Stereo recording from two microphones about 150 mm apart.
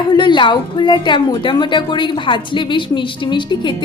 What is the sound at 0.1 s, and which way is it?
A woman's voice, 30° left (ahead or behind).